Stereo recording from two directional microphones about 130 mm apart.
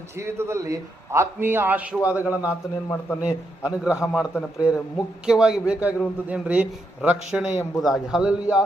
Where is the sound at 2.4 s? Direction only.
20° left (ahead or behind).